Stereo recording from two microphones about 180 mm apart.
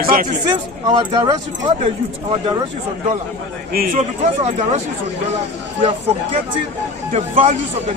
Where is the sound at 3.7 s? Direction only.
55° right (ahead or behind).